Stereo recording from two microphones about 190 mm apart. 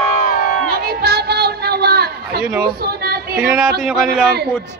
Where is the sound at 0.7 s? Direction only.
55° right (ahead or behind).